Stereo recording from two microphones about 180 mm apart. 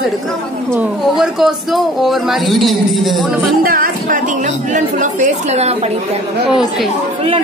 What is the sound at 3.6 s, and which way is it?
Speech, 50° right (ahead or behind).